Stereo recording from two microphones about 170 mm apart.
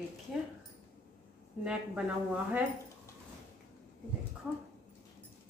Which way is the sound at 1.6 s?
5° right (ahead or behind).